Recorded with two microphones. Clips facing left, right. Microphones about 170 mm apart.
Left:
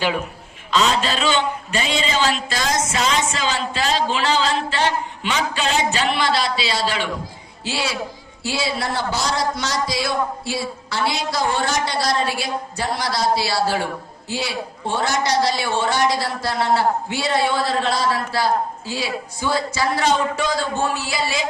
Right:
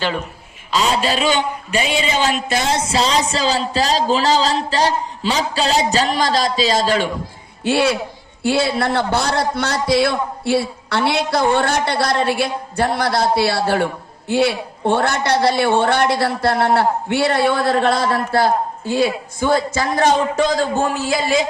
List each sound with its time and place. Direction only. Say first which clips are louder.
0.7 s a man's voice: right 1 dB; 10° right (ahead or behind); by 7.1 s 45° right (ahead or behind)
7.6 s a woman's voice: right 9 dB; 55° right (ahead or behind)